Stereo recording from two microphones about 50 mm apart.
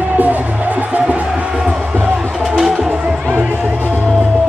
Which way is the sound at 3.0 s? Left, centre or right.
Right.